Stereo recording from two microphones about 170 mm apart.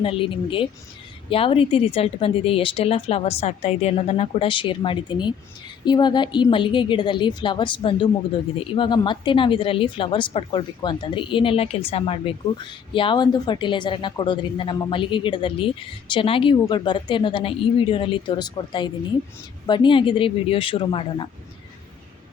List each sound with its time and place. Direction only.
0.0 s speech: 30° left (ahead or behind)